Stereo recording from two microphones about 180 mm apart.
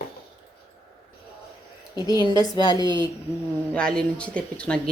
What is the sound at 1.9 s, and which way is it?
Speech, 25° left (ahead or behind).